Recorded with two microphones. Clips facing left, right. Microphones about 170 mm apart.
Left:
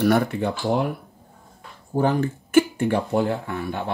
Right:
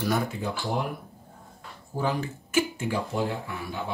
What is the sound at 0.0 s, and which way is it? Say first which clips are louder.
Speech: left 8 dB; 65° left (ahead or behind).